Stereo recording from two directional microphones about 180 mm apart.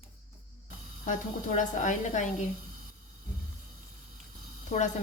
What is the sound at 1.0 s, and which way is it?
A woman's voice, 45° left (ahead or behind).